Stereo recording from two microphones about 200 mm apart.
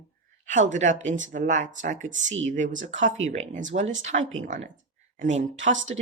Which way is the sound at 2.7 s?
70° right (ahead or behind).